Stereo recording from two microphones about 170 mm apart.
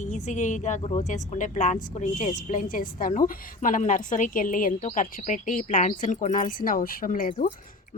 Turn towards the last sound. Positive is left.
turn(degrees=55)  # may be behind; listen again after turning